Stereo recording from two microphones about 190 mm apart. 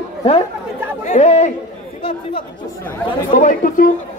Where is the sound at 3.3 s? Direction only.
40° left (ahead or behind).